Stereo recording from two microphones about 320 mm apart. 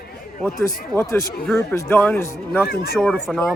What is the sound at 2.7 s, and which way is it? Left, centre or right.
Speech, left.